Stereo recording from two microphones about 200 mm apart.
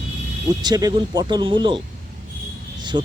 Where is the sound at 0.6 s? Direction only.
20° right (ahead or behind).